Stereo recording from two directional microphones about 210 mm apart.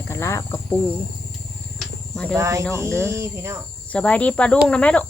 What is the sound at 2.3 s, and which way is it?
Speech, 15° right (ahead or behind).